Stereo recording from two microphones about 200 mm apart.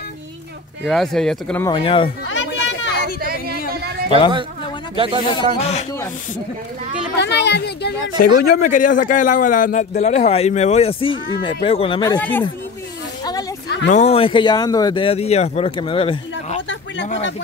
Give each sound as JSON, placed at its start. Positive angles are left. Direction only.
{"t": 0.8, "sound": "speech", "side_deg": 0}
{"t": 1.7, "sound": "speech", "side_deg": 25}
{"t": 2.3, "sound": "children playing", "side_deg": 65}
{"t": 3.2, "sound": "a sound", "side_deg": -50}
{"t": 4.9, "sound": "speech", "side_deg": -25}
{"t": 5.3, "sound": "a man's voice", "side_deg": 30}
{"t": 7.2, "sound": "speech", "side_deg": 60}
{"t": 8.5, "sound": "a man's voice", "side_deg": 40}
{"t": 12.2, "sound": "speech", "side_deg": 10}
{"t": 13.2, "sound": "a sound", "side_deg": 20}
{"t": 13.7, "sound": "a sound", "side_deg": 60}
{"t": 13.9, "sound": "speech", "side_deg": 30}
{"t": 16.6, "sound": "a sound", "side_deg": 65}